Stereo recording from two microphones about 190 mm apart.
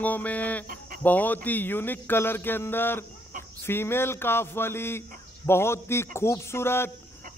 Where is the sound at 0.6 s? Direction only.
45° right (ahead or behind).